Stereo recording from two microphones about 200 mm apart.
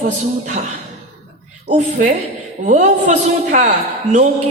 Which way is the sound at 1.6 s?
35° right (ahead or behind).